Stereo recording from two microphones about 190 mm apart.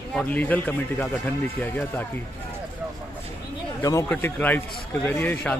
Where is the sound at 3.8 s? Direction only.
20° left (ahead or behind).